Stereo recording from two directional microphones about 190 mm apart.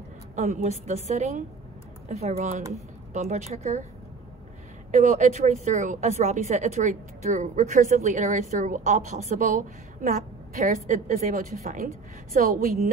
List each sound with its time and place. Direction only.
0.4 s a woman's voice: 35° right (ahead or behind)
4.9 s a woman's voice: 40° right (ahead or behind)